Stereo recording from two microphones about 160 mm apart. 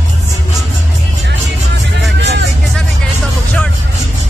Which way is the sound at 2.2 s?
90° right.